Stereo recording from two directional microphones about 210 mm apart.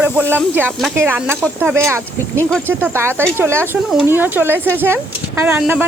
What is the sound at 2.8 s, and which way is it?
Speech, 10° right (ahead or behind).